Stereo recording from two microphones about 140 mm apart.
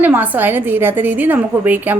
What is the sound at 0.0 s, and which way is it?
A woman's voice, 10° right (ahead or behind).